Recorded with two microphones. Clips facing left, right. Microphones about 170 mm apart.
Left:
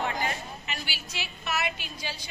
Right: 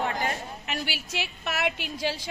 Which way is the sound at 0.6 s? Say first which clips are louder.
Right 5 dB; 65° right (ahead or behind).